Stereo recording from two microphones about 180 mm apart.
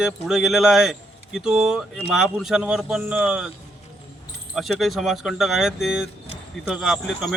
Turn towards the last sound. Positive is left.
turn(degrees=0)  # may be behind; listen again after turning